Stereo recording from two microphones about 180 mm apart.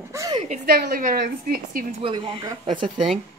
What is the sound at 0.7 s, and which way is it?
A woman's voice, 60° right (ahead or behind).